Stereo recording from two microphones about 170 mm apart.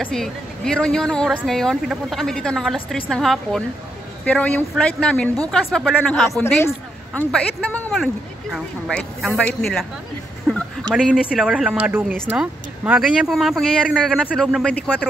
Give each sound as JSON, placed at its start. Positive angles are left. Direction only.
{"t": 0.0, "sound": "speech", "side_deg": 5}
{"t": 11.0, "sound": "speech", "side_deg": -5}
{"t": 14.3, "sound": "speech", "side_deg": 5}